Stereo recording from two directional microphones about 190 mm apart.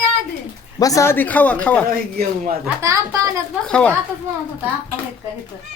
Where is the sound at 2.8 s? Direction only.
15° right (ahead or behind).